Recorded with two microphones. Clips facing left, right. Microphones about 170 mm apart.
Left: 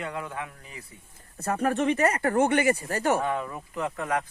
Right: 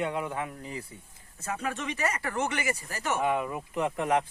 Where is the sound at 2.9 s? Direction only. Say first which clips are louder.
Left 7 dB; 35° left (ahead or behind).